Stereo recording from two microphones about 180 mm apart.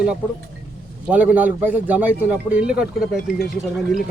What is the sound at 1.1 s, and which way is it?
A man's voice, 10° right (ahead or behind).